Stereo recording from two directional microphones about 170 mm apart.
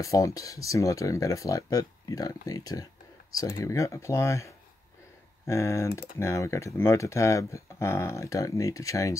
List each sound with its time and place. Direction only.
0.0 s speech: 20° left (ahead or behind)
5.5 s speech: 15° left (ahead or behind)